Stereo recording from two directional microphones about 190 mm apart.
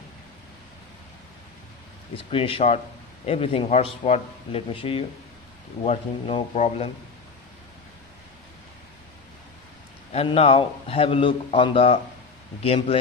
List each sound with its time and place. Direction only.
2.1 s a man's voice: 30° left (ahead or behind)
10.1 s a man's voice: 30° left (ahead or behind)